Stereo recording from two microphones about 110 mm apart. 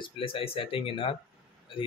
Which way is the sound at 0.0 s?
55° left (ahead or behind).